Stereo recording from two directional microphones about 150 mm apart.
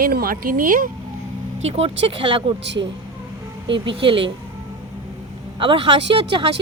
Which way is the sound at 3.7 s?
35° right (ahead or behind).